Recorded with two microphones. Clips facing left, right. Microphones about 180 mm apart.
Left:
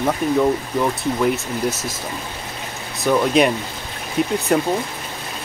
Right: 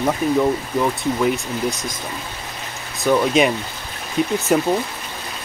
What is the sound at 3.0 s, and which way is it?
Speech, centre (ahead or behind).